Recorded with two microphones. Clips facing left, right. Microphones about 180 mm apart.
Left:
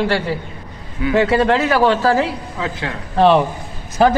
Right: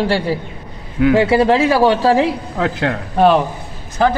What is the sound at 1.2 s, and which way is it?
Speech, 10° right (ahead or behind).